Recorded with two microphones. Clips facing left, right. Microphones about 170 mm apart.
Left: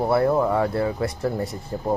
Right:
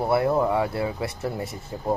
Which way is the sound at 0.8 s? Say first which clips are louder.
Left 4 dB; 5° right (ahead or behind).